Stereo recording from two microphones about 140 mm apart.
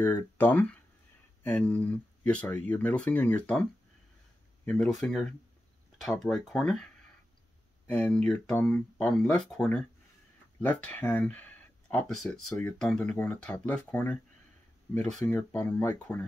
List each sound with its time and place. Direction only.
0.0 s speech: 15° left (ahead or behind)
4.6 s speech: 5° left (ahead or behind)
5.9 s speech: centre (ahead or behind)
15.2 s speech: 15° left (ahead or behind)
16.1 s speech: 5° left (ahead or behind)